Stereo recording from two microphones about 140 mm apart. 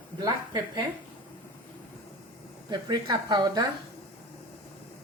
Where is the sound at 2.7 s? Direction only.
30° right (ahead or behind).